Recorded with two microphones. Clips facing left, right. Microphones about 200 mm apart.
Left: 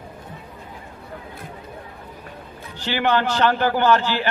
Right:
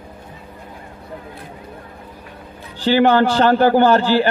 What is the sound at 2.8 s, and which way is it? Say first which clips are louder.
A man's voice: right 7 dB; 35° right (ahead or behind).